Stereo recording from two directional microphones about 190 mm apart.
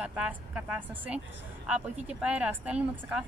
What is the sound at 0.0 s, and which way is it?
Speech, 5° right (ahead or behind).